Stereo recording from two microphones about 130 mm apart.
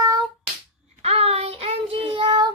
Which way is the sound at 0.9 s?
50° right (ahead or behind).